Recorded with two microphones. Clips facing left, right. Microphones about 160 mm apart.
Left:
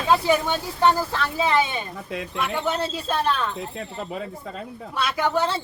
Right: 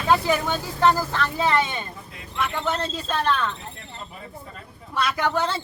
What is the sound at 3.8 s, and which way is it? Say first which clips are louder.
Speech: left 9 dB; 90° left.